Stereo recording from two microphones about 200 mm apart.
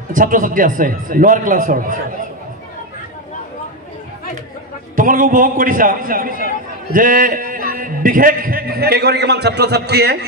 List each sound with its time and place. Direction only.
0.1 s a man's voice: 40° right (ahead or behind)
4.9 s a man's voice: 40° right (ahead or behind)